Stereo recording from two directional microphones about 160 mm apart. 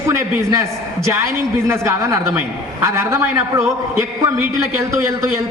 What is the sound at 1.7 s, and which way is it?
A man's voice, 20° right (ahead or behind).